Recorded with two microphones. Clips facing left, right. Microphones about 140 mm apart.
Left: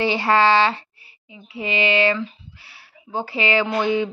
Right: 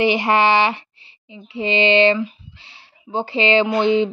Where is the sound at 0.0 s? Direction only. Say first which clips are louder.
Right 2 dB; 20° right (ahead or behind).